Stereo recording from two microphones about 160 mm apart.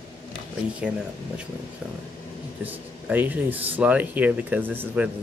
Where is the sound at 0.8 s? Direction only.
5° right (ahead or behind).